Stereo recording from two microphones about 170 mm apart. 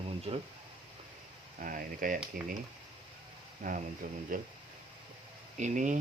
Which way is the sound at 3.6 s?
50° right (ahead or behind).